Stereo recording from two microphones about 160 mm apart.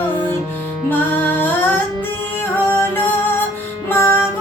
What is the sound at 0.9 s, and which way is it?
Music, 10° left (ahead or behind).